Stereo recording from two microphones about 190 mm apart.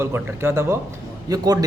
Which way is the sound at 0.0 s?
10° right (ahead or behind).